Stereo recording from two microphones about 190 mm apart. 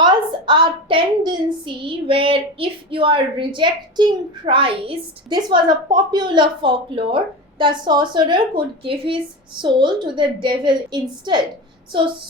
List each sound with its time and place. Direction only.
0.0 s child singing: 25° right (ahead or behind)